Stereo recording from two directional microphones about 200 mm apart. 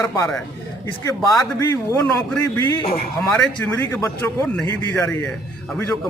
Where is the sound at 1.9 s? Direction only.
15° left (ahead or behind).